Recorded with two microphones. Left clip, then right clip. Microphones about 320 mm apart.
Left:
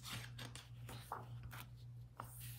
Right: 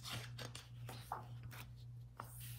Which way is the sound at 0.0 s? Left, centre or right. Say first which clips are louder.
Right 2 dB; centre.